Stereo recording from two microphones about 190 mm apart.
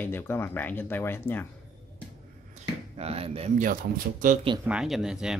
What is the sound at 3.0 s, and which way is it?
Speech, 35° right (ahead or behind).